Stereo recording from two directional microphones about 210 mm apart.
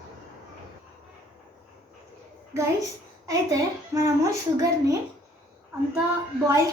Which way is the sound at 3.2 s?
15° right (ahead or behind).